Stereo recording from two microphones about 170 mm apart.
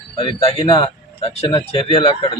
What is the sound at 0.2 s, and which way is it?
Speech, 30° left (ahead or behind).